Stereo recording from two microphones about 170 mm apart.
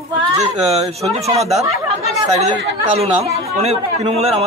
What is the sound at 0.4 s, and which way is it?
A man's voice, 35° right (ahead or behind).